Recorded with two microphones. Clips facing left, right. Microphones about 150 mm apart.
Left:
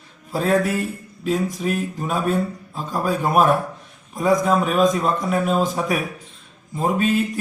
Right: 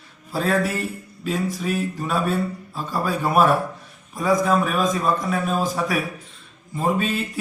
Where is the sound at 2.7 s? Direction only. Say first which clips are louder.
Left 3 dB; 15° left (ahead or behind).